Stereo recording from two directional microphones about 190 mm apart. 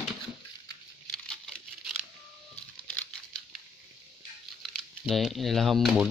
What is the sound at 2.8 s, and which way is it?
Pig, centre (ahead or behind).